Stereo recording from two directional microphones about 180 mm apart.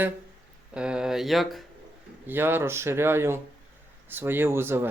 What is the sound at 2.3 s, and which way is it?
Speech, 10° right (ahead or behind).